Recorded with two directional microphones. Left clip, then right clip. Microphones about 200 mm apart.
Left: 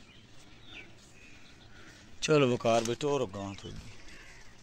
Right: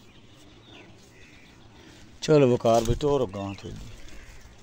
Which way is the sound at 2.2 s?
20° right (ahead or behind).